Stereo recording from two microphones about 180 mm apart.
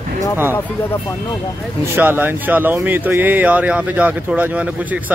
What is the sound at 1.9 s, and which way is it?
Speech, 10° right (ahead or behind).